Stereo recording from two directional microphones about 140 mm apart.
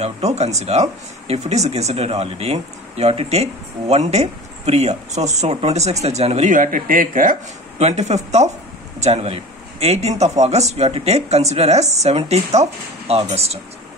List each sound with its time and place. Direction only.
0.0 s speech: 50° right (ahead or behind)
6.5 s speech: 75° right (ahead or behind)
7.8 s speech: 55° right (ahead or behind)